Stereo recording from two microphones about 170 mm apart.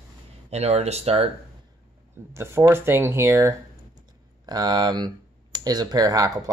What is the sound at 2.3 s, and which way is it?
Speech, 15° right (ahead or behind).